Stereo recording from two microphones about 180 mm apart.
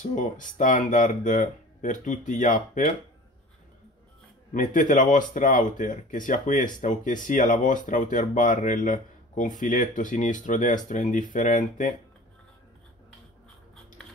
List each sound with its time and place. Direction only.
0.0 s speech: 45° left (ahead or behind)
4.6 s speech: 45° left (ahead or behind)